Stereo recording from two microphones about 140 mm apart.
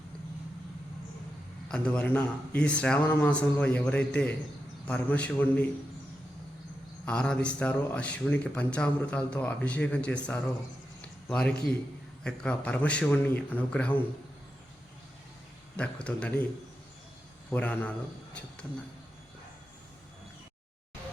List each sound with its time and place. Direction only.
1.6 s a man's voice: 10° left (ahead or behind)
7.0 s a man's voice: 5° left (ahead or behind)
15.7 s a man's voice: 10° left (ahead or behind)
17.5 s a man's voice: 10° left (ahead or behind)